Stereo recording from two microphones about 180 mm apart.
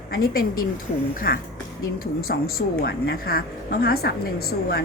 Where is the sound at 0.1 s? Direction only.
55° left (ahead or behind).